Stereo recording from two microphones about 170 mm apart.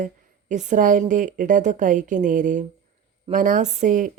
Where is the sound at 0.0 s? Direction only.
45° right (ahead or behind).